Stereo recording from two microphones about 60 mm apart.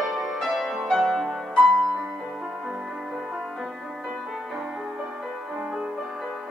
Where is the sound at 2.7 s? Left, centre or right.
Centre.